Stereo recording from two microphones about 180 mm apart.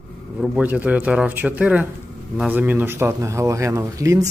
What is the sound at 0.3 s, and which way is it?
Speech, 5° right (ahead or behind).